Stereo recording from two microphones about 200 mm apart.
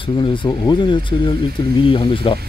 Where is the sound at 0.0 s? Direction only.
20° left (ahead or behind).